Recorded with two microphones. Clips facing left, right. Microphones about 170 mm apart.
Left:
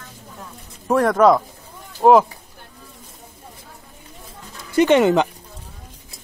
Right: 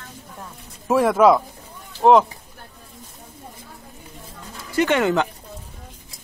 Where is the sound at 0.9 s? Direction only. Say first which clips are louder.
Even; 5° right (ahead or behind).